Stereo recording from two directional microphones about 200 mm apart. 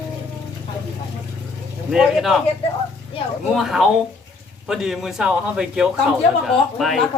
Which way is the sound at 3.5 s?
Centre (ahead or behind).